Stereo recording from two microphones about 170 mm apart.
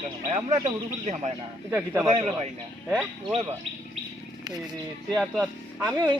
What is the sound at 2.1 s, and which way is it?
Speech, 40° right (ahead or behind).